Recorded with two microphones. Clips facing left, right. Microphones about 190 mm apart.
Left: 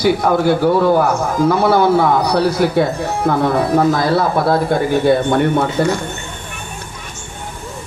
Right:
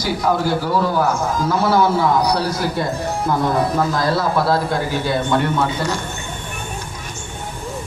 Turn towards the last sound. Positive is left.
turn(degrees=55)  # may be behind; listen again after turning